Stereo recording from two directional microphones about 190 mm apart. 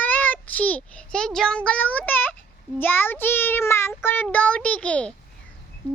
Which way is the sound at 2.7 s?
10° left (ahead or behind).